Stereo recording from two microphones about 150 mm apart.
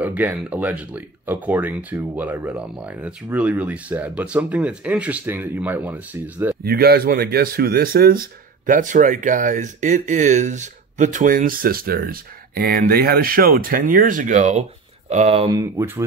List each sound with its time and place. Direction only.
0.0 s speech: 10° right (ahead or behind)
6.6 s speech: 90° right; by 14.6 s 55° right (ahead or behind)
15.0 s speech: 45° right (ahead or behind)
15.5 s speech: 20° right (ahead or behind)